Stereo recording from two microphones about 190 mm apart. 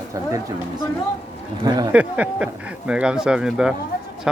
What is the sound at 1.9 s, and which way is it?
Speech, 5° right (ahead or behind).